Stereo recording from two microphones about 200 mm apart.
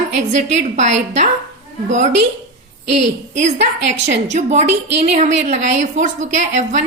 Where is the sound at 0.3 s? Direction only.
35° right (ahead or behind).